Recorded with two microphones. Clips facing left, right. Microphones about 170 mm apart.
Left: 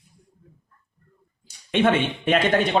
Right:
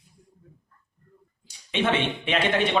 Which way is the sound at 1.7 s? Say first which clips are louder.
Left 4 dB; 50° left (ahead or behind).